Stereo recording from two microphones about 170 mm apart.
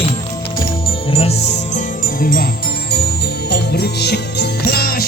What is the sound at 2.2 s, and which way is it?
Music, 60° left (ahead or behind).